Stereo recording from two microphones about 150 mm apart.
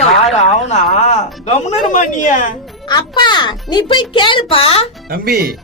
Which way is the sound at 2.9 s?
30° left (ahead or behind).